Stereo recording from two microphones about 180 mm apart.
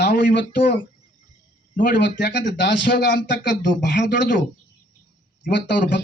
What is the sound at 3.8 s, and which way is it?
Speech, 75° left (ahead or behind).